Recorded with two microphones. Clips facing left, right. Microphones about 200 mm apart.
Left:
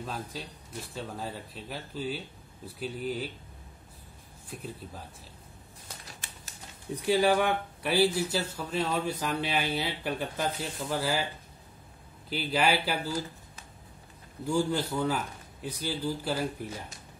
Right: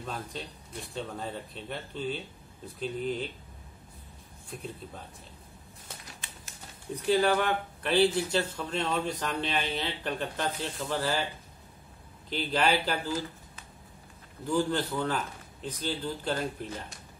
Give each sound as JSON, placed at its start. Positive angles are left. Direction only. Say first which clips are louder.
{"t": 0.0, "sound": "speech", "louder": "even", "side_deg": 5}
{"t": 7.1, "sound": "speech", "louder": "left 1 dB", "side_deg": 10}
{"t": 12.3, "sound": "speech", "louder": "even", "side_deg": 5}
{"t": 14.4, "sound": "speech", "louder": "even", "side_deg": 10}